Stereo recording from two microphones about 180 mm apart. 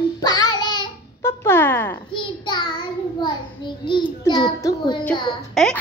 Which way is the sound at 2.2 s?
25° left (ahead or behind).